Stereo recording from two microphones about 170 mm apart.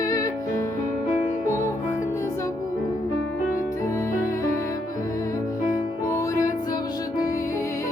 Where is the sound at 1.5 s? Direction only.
15° left (ahead or behind).